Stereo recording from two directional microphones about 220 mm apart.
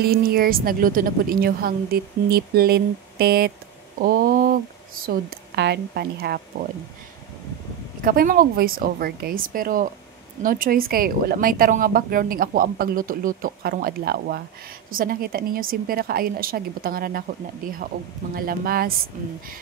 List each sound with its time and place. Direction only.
0.0 s a woman's voice: 45° right (ahead or behind)
8.0 s speech: 40° right (ahead or behind)
18.3 s a woman's voice: 40° right (ahead or behind)